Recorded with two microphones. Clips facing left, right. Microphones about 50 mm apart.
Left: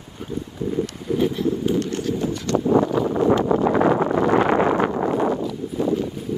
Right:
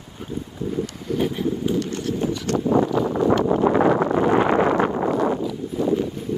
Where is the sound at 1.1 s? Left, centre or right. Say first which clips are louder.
Left 2 dB; centre.